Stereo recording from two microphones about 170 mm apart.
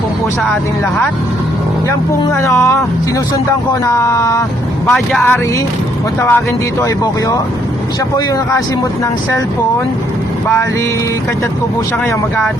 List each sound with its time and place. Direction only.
1.9 s speech: 15° left (ahead or behind)
3.8 s speech: 20° left (ahead or behind)
4.9 s speech: 5° left (ahead or behind)